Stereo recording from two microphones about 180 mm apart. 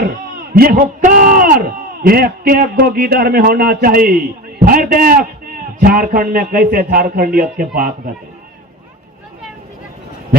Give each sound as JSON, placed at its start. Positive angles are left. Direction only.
{"t": 0.5, "sound": "a man's voice", "side_deg": -55}